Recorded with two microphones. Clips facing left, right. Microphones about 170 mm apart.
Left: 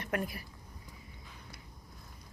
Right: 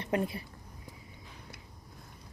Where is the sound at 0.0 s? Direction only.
25° right (ahead or behind).